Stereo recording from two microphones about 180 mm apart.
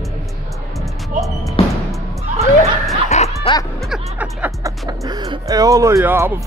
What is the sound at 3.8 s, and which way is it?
Music, 5° right (ahead or behind).